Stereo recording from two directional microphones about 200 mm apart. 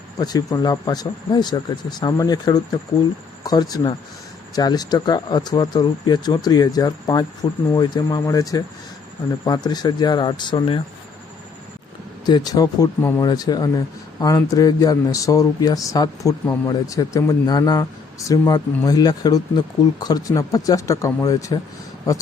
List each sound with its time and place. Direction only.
0.2 s speech: 20° left (ahead or behind)
12.2 s speech: 20° left (ahead or behind)